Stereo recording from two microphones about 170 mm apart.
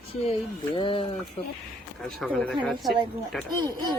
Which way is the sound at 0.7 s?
30° left (ahead or behind).